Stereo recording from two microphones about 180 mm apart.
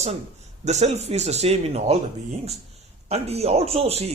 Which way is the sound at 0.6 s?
40° right (ahead or behind).